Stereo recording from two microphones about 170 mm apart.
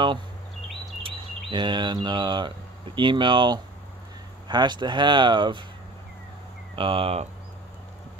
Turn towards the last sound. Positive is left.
turn(degrees=-35)  # may be behind; listen again after turning